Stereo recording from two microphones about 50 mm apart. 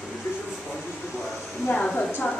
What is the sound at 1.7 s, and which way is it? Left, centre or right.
Speech, left.